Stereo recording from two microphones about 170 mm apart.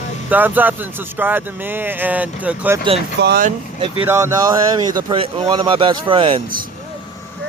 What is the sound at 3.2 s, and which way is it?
Speech, 65° right (ahead or behind).